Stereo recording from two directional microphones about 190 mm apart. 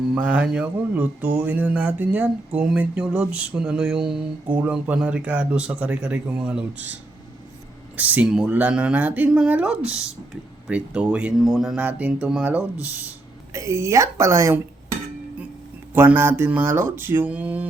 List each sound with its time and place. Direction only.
0.1 s speech: 5° right (ahead or behind)
7.9 s speech: 10° right (ahead or behind)
16.0 s speech: 10° right (ahead or behind)